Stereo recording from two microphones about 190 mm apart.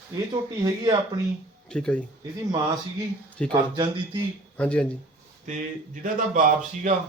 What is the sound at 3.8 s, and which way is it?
Speech, 25° right (ahead or behind).